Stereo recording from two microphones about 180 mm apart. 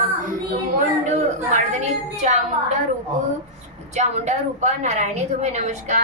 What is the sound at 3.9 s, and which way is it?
A woman's voice, 40° right (ahead or behind).